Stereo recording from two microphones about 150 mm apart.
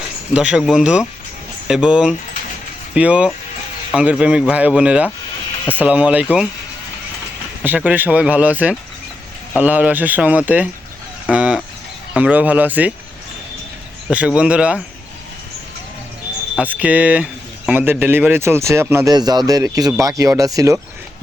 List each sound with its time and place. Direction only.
0.3 s speech: 5° right (ahead or behind)
7.6 s speech: 10° right (ahead or behind)
11.3 s fowl: 5° right (ahead or behind)
12.1 s speech: 10° right (ahead or behind)
14.1 s speech: 10° right (ahead or behind)
16.6 s speech: 10° right (ahead or behind)